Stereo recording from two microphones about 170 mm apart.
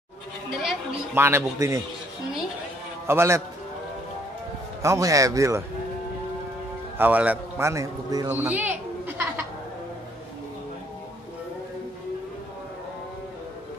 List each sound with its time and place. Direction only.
1.1 s a man's voice: 15° right (ahead or behind)
3.1 s a man's voice: 15° right (ahead or behind)
4.8 s a man's voice: 20° right (ahead or behind)
7.0 s a man's voice: 10° right (ahead or behind)
8.3 s children playing: 10° right (ahead or behind)